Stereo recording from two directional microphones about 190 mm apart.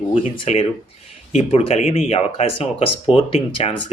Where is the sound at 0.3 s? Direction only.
35° left (ahead or behind).